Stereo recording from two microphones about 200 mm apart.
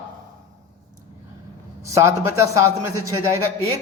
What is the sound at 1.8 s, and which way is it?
A man's voice, 15° right (ahead or behind).